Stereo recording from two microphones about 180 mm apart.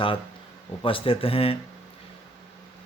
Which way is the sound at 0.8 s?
30° left (ahead or behind).